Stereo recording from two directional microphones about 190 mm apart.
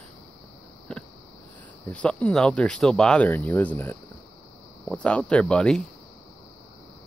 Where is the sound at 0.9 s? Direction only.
5° left (ahead or behind).